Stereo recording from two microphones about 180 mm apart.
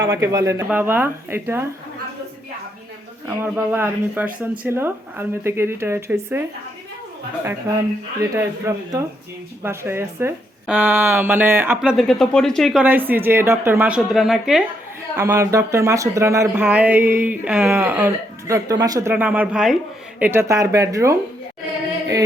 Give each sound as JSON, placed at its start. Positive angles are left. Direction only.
{"t": 0.0, "sound": "speech", "side_deg": -15}
{"t": 3.4, "sound": "speech", "side_deg": -10}
{"t": 8.4, "sound": "speech", "side_deg": -15}
{"t": 12.8, "sound": "speech", "side_deg": -10}
{"t": 15.1, "sound": "speech", "side_deg": -15}